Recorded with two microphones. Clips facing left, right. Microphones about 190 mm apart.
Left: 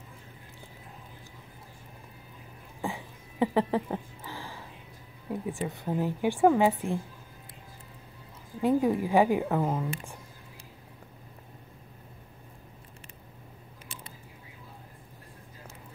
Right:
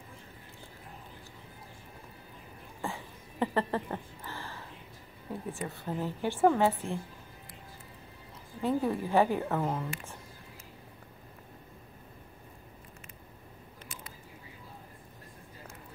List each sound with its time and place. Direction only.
2.8 s a sound: 15° left (ahead or behind)
5.3 s a woman's voice: 10° left (ahead or behind)
8.5 s a woman's voice: 15° left (ahead or behind)